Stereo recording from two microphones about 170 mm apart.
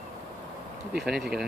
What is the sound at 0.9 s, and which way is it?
Speech, centre (ahead or behind).